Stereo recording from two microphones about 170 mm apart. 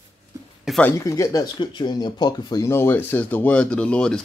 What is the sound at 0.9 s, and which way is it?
Speech, 20° left (ahead or behind).